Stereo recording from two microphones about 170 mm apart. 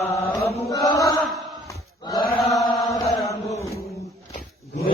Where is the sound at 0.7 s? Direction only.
20° left (ahead or behind).